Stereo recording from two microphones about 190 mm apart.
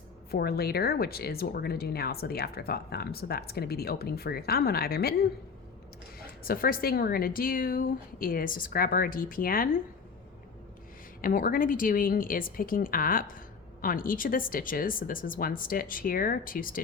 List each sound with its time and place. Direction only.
0.3 s speech: 55° left (ahead or behind)
6.1 s a woman's voice: 50° left (ahead or behind)
11.2 s a woman's voice: 50° left (ahead or behind)